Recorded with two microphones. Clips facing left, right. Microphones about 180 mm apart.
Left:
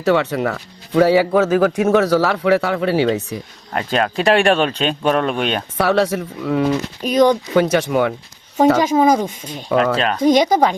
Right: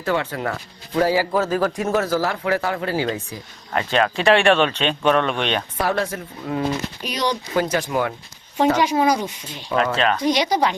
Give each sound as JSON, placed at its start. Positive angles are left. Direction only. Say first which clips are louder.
{"t": 0.0, "sound": "speech", "louder": "left 6 dB", "side_deg": 75}
{"t": 3.8, "sound": "speech", "louder": "left 1 dB", "side_deg": 40}
{"t": 5.3, "sound": "speech", "louder": "left 3 dB", "side_deg": 5}
{"t": 5.7, "sound": "speech", "louder": "left 6 dB", "side_deg": 75}
{"t": 7.0, "sound": "speech", "louder": "left 13 dB", "side_deg": 50}
{"t": 7.7, "sound": "speech", "louder": "left 5 dB", "side_deg": 70}
{"t": 8.5, "sound": "speech", "louder": "left 4 dB", "side_deg": 45}